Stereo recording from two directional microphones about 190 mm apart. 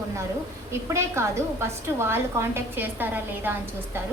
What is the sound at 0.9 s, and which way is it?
A woman's voice, 15° right (ahead or behind).